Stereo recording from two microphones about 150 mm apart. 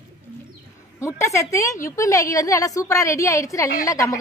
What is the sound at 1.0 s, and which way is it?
A woman's voice, 20° left (ahead or behind).